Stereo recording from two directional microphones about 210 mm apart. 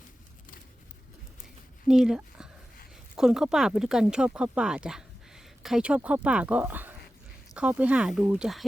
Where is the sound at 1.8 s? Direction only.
Centre (ahead or behind).